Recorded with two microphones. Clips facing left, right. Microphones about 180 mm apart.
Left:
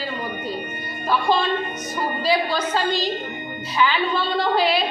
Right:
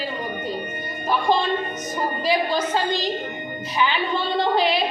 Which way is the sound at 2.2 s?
20° right (ahead or behind).